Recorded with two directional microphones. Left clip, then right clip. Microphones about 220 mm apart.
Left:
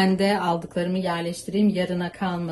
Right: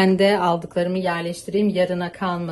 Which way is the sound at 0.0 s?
40° right (ahead or behind).